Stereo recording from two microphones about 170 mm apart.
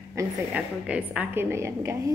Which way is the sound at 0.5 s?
5° right (ahead or behind).